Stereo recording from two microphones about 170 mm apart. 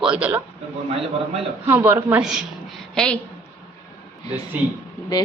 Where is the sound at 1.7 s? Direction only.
10° right (ahead or behind).